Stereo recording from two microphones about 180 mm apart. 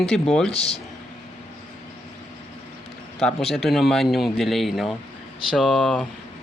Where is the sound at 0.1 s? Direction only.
5° left (ahead or behind).